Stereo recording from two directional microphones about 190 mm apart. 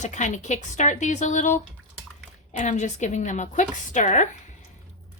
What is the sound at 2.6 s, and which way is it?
Speech, 40° left (ahead or behind).